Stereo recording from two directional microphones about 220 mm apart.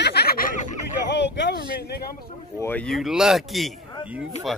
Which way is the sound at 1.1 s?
55° left (ahead or behind).